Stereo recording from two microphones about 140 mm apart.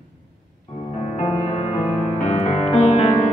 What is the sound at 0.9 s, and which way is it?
Music, 45° left (ahead or behind).